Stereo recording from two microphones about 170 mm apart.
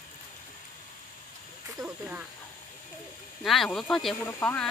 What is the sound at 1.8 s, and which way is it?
Snake, 5° right (ahead or behind).